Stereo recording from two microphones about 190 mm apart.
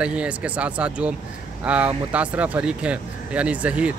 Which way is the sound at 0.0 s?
5° right (ahead or behind).